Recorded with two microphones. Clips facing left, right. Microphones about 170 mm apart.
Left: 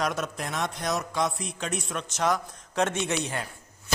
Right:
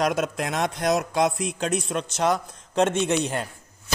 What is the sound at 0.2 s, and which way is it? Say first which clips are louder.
Speech: right 6 dB; 85° right.